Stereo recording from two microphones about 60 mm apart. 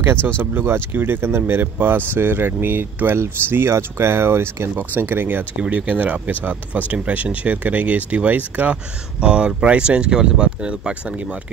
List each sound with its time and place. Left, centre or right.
0.0 s speech: right
5.6 s speech: right